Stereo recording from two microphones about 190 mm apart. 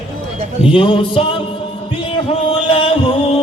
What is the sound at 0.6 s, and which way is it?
Music, 30° left (ahead or behind).